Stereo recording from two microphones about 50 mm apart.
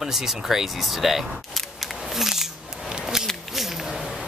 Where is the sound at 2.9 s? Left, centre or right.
Centre.